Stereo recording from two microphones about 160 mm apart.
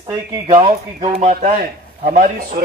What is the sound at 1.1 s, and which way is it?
Speech, 45° right (ahead or behind).